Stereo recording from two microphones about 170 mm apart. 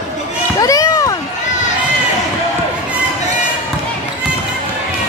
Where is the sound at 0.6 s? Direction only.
20° left (ahead or behind).